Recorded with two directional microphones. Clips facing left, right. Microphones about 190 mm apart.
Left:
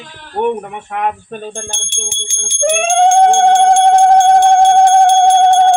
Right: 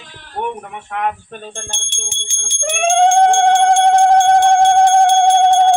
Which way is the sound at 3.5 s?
50° left (ahead or behind).